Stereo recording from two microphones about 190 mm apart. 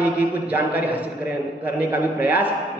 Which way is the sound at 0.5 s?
10° right (ahead or behind).